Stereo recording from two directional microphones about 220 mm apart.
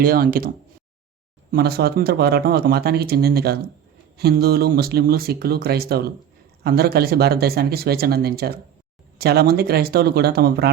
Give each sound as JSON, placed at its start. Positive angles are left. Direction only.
{"t": 0.0, "sound": "speech", "side_deg": -40}